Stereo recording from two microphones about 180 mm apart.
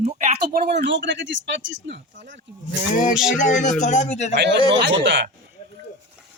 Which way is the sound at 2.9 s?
45° left (ahead or behind).